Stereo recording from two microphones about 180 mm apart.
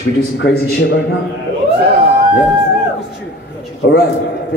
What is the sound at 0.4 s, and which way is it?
Speech, 65° left (ahead or behind).